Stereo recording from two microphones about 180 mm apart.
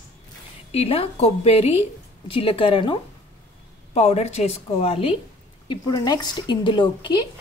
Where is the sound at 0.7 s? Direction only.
35° left (ahead or behind).